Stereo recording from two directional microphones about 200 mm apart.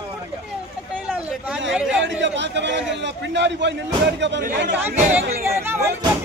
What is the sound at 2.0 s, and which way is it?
A man's voice, 65° right (ahead or behind).